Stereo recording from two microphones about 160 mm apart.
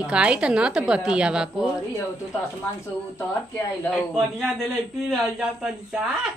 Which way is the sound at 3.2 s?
15° left (ahead or behind).